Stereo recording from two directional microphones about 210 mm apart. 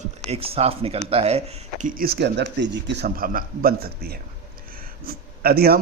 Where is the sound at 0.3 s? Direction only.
30° right (ahead or behind).